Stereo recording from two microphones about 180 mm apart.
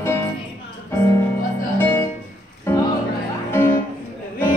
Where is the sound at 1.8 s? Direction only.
15° left (ahead or behind).